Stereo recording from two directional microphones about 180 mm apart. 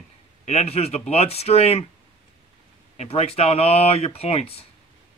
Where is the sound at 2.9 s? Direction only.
35° left (ahead or behind).